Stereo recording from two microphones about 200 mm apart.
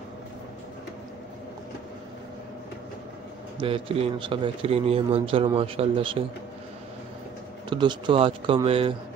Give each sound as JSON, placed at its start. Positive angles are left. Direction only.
{"t": 3.5, "sound": "speech", "side_deg": -25}
{"t": 7.7, "sound": "speech", "side_deg": -25}